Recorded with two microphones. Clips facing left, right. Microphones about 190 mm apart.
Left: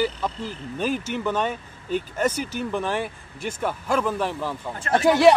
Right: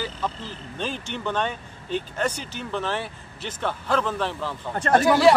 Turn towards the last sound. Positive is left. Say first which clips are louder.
# left 1 dB
turn(degrees=20)  # may be behind; listen again after turning